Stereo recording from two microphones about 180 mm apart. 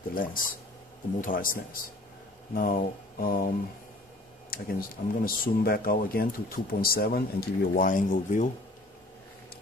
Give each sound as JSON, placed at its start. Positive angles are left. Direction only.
{"t": 0.1, "sound": "speech", "side_deg": 50}
{"t": 4.5, "sound": "speech", "side_deg": 55}